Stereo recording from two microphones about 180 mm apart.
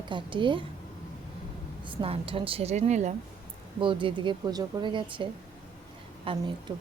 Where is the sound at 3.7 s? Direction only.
25° right (ahead or behind).